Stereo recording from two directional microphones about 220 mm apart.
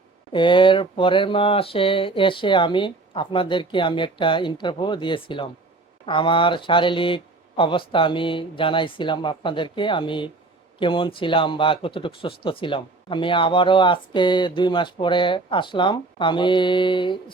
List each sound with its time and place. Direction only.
0.3 s speech: 20° left (ahead or behind)